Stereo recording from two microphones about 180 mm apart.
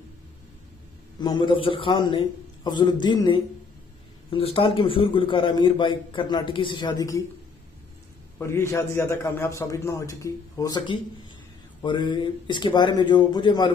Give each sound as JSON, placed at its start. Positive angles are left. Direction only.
{"t": 1.2, "sound": "a man's voice", "side_deg": 25}
{"t": 8.4, "sound": "a man's voice", "side_deg": 15}